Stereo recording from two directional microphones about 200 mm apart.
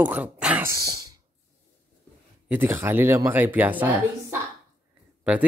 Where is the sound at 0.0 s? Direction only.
10° right (ahead or behind).